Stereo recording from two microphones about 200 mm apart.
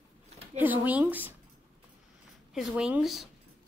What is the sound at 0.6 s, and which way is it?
Speech, 10° right (ahead or behind).